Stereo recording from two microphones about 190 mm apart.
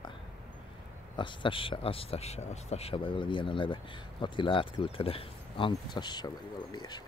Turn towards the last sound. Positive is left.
turn(degrees=20)  # may be behind; listen again after turning